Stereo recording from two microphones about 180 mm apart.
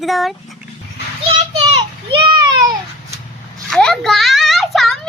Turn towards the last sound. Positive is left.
turn(degrees=0)  # may be behind; listen again after turning